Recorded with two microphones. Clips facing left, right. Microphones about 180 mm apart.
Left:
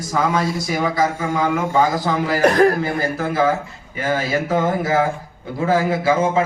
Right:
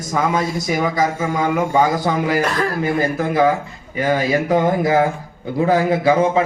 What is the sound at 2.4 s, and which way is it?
Speech, 50° left (ahead or behind).